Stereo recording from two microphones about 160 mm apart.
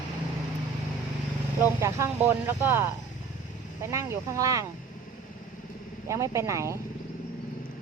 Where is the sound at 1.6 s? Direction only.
15° right (ahead or behind).